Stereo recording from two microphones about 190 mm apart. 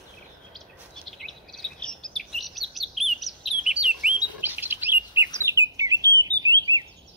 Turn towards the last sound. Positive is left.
turn(degrees=-20)  # may be behind; listen again after turning